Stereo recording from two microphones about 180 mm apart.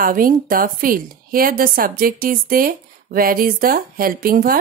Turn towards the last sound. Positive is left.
turn(degrees=-55)  # may be behind; listen again after turning